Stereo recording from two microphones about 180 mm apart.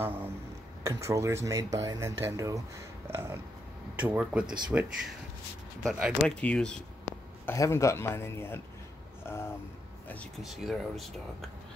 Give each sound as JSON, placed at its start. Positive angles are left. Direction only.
{"t": 0.0, "sound": "speech", "side_deg": -10}
{"t": 3.1, "sound": "a sound", "side_deg": -15}
{"t": 4.0, "sound": "speech", "side_deg": -5}
{"t": 5.9, "sound": "speech", "side_deg": 0}
{"t": 9.2, "sound": "vehicle", "side_deg": 15}
{"t": 10.0, "sound": "speech", "side_deg": 5}